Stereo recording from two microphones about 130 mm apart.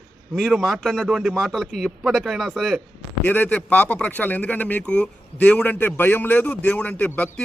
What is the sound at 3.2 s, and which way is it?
A man's voice, 10° left (ahead or behind).